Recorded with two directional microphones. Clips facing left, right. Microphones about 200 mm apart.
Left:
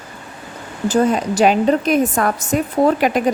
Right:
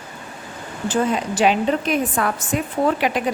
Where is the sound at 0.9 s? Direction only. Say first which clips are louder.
Left 5 dB; 45° left (ahead or behind).